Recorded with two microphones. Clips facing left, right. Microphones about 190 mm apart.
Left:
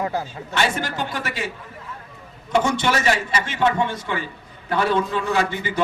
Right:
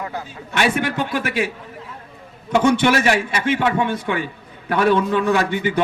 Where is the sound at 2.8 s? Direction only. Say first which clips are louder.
Right 4 dB; 60° right (ahead or behind).